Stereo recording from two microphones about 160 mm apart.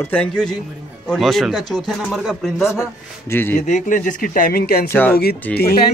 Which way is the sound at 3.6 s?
50° left (ahead or behind).